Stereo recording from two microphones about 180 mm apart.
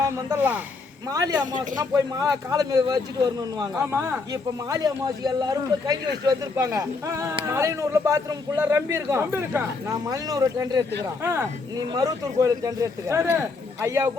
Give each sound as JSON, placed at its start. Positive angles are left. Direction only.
{"t": 0.0, "sound": "a man's voice", "side_deg": -15}